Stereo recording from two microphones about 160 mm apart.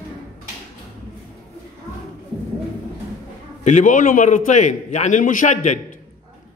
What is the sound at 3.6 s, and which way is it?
A man's voice, 50° left (ahead or behind).